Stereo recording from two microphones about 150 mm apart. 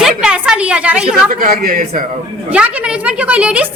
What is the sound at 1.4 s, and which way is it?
Speech, 60° right (ahead or behind).